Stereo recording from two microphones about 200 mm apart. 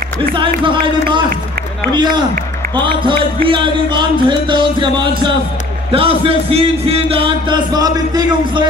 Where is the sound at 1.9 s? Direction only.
20° right (ahead or behind).